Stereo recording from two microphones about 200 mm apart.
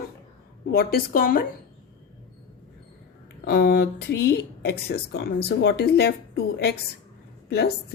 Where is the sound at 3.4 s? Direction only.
55° left (ahead or behind).